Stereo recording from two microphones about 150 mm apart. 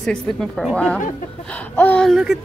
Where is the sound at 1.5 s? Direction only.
10° left (ahead or behind).